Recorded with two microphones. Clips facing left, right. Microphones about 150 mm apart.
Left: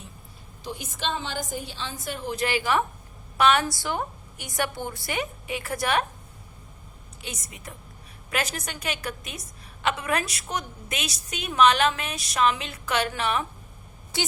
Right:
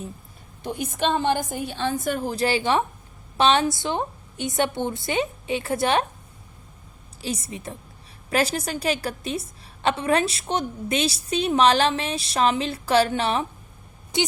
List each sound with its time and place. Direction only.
0.6 s a woman's voice: 55° right (ahead or behind); by 6.1 s 25° right (ahead or behind)
7.2 s a woman's voice: 30° right (ahead or behind)
14.1 s speech: 20° right (ahead or behind)